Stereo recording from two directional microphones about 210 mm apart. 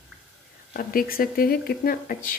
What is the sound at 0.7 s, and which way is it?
Speech, 45° left (ahead or behind).